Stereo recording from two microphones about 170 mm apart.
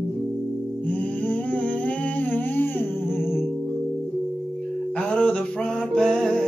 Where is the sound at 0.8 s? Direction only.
10° left (ahead or behind).